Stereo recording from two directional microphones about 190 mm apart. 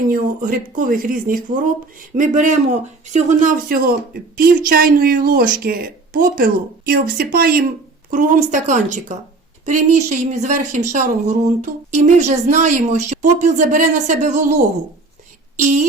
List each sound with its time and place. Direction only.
0.1 s speech: 45° right (ahead or behind)
15.6 s speech: 40° right (ahead or behind)